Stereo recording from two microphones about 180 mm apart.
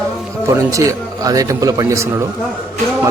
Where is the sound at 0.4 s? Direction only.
15° right (ahead or behind).